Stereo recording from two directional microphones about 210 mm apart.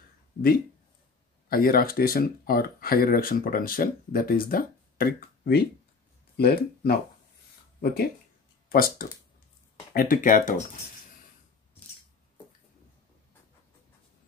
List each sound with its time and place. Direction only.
1.5 s speech: 45° left (ahead or behind)